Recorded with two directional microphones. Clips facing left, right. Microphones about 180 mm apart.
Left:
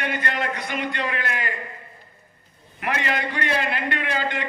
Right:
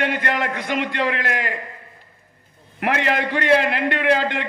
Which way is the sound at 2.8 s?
70° right (ahead or behind).